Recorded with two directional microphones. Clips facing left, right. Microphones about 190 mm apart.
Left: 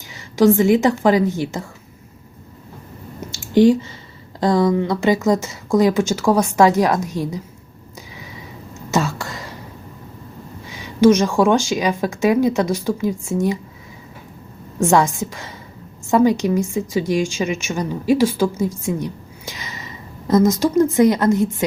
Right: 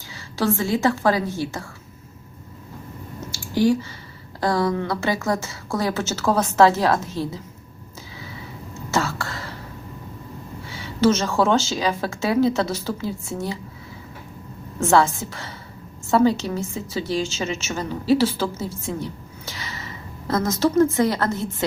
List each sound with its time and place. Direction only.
0.1 s a woman's voice: 20° left (ahead or behind)
3.2 s a sound: 20° left (ahead or behind)
4.4 s speech: 20° left (ahead or behind)
8.9 s whispering: 15° left (ahead or behind)
10.7 s speech: 15° left (ahead or behind)
14.8 s a woman's voice: 15° left (ahead or behind)